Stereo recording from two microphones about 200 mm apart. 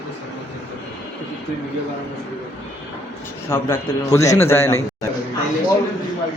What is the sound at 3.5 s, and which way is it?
A man's voice, 15° left (ahead or behind).